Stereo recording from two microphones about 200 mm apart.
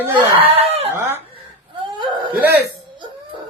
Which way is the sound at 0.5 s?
30° right (ahead or behind).